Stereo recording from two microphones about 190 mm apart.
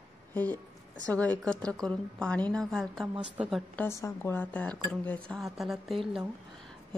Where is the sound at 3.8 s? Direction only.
15° left (ahead or behind).